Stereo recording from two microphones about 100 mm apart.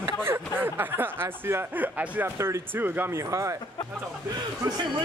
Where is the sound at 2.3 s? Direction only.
25° right (ahead or behind).